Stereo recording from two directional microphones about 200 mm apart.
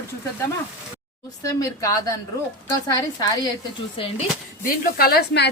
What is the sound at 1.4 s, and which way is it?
Speech, 15° left (ahead or behind).